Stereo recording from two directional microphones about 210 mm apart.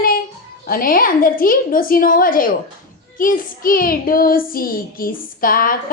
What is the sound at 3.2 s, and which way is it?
Child singing, 40° left (ahead or behind).